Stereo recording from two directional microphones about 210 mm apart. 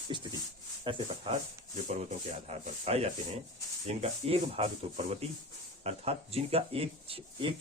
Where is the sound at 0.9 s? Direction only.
25° right (ahead or behind).